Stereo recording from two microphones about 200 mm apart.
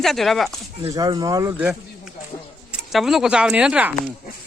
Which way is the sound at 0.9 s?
20° right (ahead or behind).